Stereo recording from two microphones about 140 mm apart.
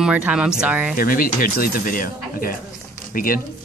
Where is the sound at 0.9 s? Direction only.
90° left.